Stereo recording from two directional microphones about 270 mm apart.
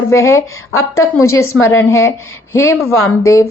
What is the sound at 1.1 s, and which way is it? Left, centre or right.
A woman's voice, centre.